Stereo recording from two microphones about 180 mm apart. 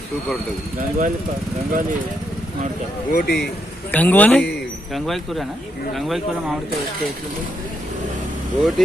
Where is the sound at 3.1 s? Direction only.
60° left (ahead or behind).